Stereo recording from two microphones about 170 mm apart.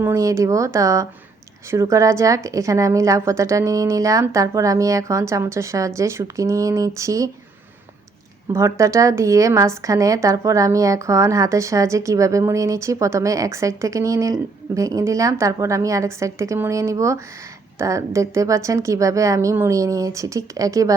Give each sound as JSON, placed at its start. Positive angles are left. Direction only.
{"t": 0.0, "sound": "a woman's voice", "side_deg": -20}
{"t": 8.5, "sound": "a woman's voice", "side_deg": -15}